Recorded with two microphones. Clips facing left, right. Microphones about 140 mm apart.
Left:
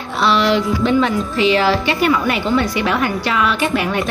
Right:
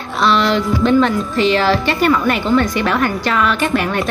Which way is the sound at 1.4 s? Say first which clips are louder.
Even; 10° left (ahead or behind).